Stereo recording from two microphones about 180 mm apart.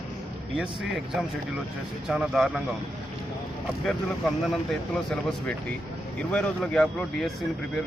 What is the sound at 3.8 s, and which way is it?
Speech, centre (ahead or behind).